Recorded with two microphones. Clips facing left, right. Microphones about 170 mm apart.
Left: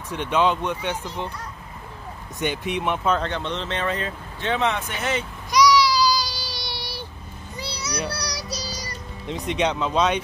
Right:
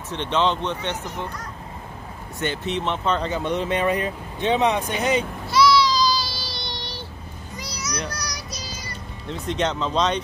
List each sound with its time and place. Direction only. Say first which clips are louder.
0.1 s speech: left 1 dB; 10° left (ahead or behind)
2.4 s speech: even; 15° left (ahead or behind)
3.2 s speech: right 3 dB; 5° right (ahead or behind)
5.5 s baby cry: even; 15° left (ahead or behind)
7.5 s a sound: left 1 dB; 30° left (ahead or behind)
8.1 s child singing: left 3 dB; 35° left (ahead or behind)
9.5 s speech: left 1 dB; 10° left (ahead or behind)